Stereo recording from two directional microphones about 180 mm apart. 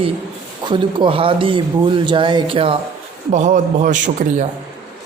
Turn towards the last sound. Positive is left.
turn(degrees=-45)  # may be behind; listen again after turning